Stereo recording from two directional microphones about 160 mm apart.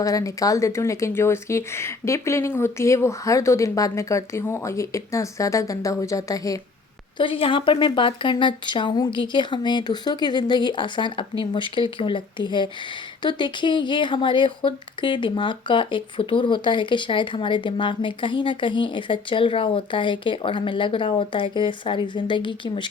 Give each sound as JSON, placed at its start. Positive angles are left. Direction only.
{"t": 0.0, "sound": "speech", "side_deg": 20}
{"t": 7.2, "sound": "speech", "side_deg": 35}